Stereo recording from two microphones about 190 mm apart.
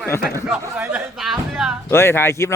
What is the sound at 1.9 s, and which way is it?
Speech, 15° left (ahead or behind).